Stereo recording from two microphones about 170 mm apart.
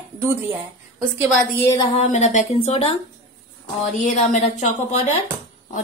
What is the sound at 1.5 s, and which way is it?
Speech, 15° left (ahead or behind).